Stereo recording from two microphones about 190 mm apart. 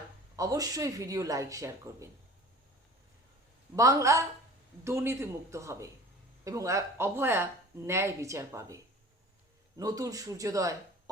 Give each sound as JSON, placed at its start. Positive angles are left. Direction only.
{"t": 0.3, "sound": "speech", "side_deg": -20}
{"t": 3.8, "sound": "speech", "side_deg": -15}